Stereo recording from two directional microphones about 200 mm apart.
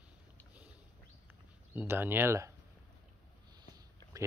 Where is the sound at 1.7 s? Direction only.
10° right (ahead or behind).